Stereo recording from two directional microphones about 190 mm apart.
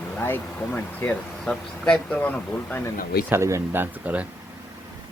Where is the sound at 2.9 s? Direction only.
50° left (ahead or behind).